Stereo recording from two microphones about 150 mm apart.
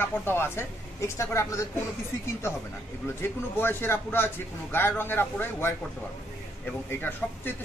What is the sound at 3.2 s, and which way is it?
Speech, 15° left (ahead or behind).